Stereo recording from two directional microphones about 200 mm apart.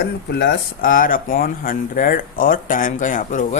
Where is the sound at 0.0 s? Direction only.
55° left (ahead or behind).